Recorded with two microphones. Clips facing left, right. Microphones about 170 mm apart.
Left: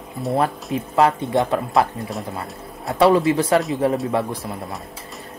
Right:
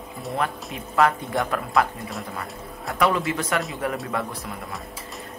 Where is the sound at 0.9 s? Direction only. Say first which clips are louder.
Left 4 dB; 25° left (ahead or behind).